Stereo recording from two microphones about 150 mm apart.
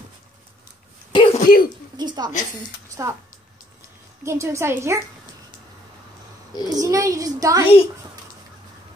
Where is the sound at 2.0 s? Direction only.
30° right (ahead or behind).